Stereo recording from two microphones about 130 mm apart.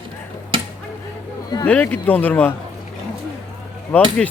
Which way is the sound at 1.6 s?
10° left (ahead or behind).